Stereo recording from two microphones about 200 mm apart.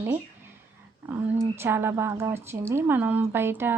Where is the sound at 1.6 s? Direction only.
10° right (ahead or behind).